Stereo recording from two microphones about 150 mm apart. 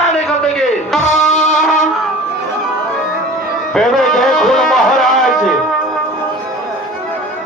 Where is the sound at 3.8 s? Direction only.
Centre (ahead or behind).